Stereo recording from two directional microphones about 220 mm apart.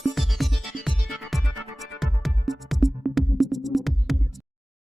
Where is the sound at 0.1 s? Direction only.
Centre (ahead or behind).